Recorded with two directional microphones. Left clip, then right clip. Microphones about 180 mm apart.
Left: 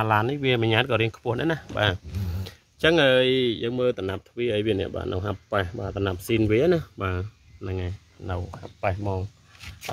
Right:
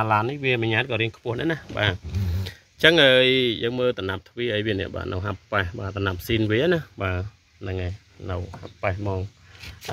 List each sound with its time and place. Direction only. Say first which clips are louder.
0.0 s speech: right 1 dB; 15° left (ahead or behind)
2.4 s speech: right 4 dB; 5° left (ahead or behind)